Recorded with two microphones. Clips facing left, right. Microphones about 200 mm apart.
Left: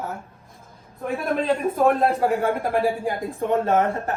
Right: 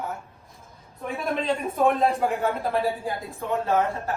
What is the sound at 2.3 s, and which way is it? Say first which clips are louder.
Speech: left 3 dB; 10° left (ahead or behind).